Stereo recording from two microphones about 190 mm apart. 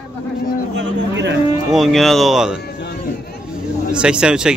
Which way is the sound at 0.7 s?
70° right (ahead or behind).